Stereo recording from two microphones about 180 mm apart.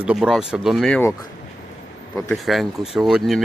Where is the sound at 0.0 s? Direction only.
5° right (ahead or behind).